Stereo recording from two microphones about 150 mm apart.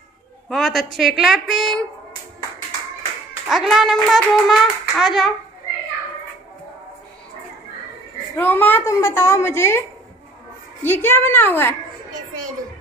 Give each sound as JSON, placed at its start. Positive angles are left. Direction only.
{"t": 0.5, "sound": "a child's voice", "side_deg": 0}
{"t": 3.4, "sound": "a child's voice", "side_deg": 0}
{"t": 8.4, "sound": "a woman's voice", "side_deg": 10}